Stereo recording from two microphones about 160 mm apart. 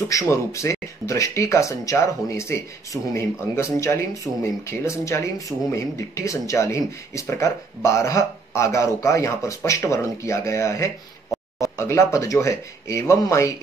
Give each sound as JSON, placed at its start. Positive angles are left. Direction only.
{"t": 0.1, "sound": "speech", "side_deg": 20}